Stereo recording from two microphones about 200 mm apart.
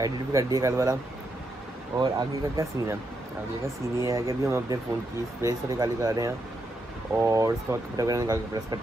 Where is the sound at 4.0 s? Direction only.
15° right (ahead or behind).